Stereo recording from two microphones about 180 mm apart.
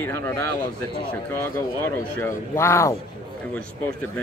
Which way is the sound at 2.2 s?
15° left (ahead or behind).